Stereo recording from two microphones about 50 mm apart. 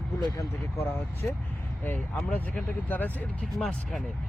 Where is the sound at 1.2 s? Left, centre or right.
Left.